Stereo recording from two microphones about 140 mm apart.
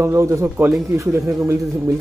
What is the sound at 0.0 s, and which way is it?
Speech, 20° right (ahead or behind).